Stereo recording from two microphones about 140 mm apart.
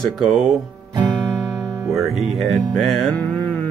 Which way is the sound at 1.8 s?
Centre (ahead or behind).